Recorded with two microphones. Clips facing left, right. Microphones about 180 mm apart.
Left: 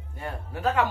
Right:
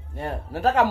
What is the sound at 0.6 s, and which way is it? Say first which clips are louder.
Speech: right 4 dB; 75° right (ahead or behind).